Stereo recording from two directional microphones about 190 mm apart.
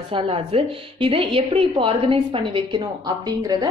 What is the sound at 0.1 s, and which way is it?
A woman's voice, 30° right (ahead or behind).